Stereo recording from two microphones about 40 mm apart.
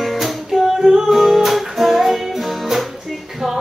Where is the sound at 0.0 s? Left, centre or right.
Centre.